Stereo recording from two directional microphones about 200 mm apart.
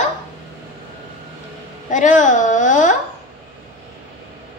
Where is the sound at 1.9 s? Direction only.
40° left (ahead or behind).